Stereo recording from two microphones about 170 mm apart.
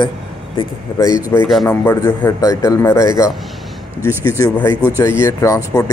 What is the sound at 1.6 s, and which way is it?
A man's voice, 15° left (ahead or behind).